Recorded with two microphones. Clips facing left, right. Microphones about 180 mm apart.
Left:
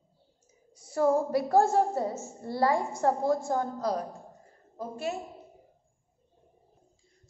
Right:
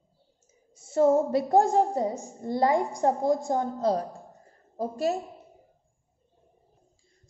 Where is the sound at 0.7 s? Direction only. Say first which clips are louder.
Right 4 dB; 25° right (ahead or behind).